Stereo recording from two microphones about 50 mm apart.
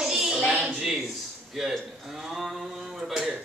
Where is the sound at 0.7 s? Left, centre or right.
Centre.